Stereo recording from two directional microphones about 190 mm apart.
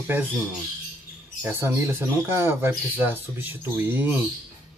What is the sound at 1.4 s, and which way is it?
Speech, 15° right (ahead or behind).